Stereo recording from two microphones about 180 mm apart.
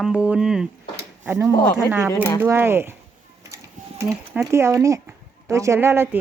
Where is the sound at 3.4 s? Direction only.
15° right (ahead or behind).